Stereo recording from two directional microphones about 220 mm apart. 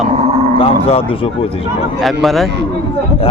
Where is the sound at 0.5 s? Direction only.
25° left (ahead or behind).